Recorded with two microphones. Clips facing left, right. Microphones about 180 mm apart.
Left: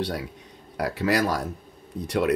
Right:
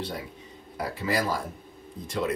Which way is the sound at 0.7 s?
75° left (ahead or behind).